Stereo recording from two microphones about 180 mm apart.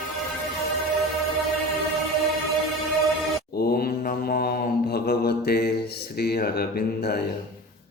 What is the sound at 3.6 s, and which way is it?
Mantra, 60° left (ahead or behind).